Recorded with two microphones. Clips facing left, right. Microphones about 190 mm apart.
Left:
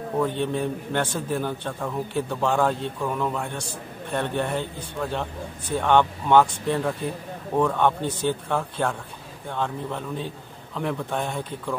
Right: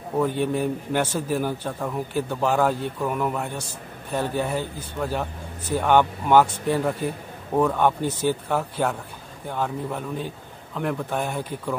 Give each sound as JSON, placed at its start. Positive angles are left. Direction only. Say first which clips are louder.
{"t": 0.4, "sound": "a man's voice", "louder": "right 2 dB", "side_deg": -10}